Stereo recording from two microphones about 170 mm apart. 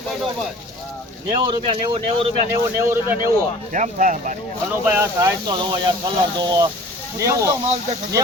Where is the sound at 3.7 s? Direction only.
50° right (ahead or behind).